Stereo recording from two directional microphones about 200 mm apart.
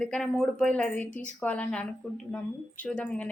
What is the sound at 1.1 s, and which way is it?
Speech, 40° left (ahead or behind).